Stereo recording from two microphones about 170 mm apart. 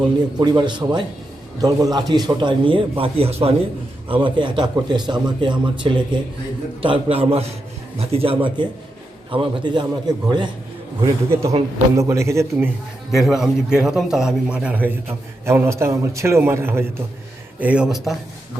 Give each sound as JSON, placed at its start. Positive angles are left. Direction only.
{"t": 0.3, "sound": "a man's voice", "side_deg": -25}
{"t": 13.1, "sound": "a man's voice", "side_deg": 0}